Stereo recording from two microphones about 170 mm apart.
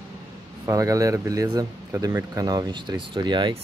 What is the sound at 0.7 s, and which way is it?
Speech, 20° right (ahead or behind).